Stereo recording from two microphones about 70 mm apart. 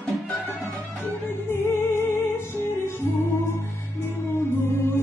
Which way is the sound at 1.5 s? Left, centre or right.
Left.